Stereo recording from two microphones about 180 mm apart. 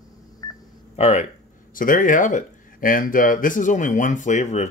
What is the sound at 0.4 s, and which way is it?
Telephone dialing, 20° left (ahead or behind).